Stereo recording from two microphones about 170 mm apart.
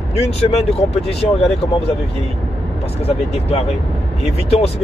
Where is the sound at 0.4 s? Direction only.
35° left (ahead or behind).